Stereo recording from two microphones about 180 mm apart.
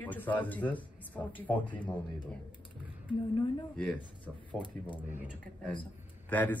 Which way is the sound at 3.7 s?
5° left (ahead or behind).